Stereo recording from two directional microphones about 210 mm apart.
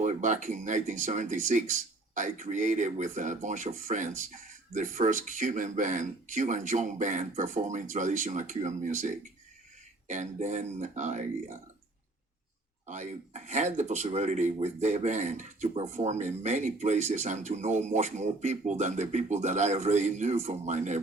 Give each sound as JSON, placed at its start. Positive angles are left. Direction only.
{"t": 0.0, "sound": "speech", "side_deg": -35}
{"t": 12.9, "sound": "speech", "side_deg": -35}